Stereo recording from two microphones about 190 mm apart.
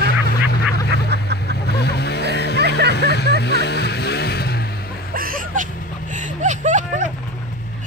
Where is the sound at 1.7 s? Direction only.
60° left (ahead or behind).